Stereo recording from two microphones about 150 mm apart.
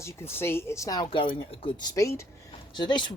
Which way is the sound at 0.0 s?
15° left (ahead or behind).